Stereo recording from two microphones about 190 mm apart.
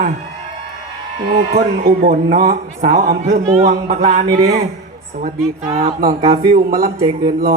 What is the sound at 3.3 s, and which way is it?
Speech, 45° right (ahead or behind).